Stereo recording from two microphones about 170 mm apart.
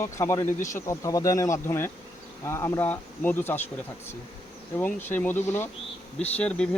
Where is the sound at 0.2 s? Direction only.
15° left (ahead or behind).